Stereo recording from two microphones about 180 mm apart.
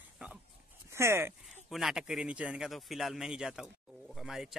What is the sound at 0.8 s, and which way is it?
Speech, 15° right (ahead or behind).